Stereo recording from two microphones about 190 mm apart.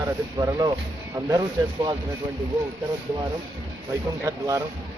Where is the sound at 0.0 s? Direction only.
20° right (ahead or behind).